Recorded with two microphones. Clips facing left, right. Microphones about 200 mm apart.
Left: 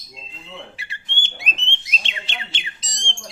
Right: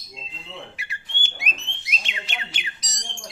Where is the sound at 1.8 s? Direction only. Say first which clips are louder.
Right 1 dB; 30° left (ahead or behind).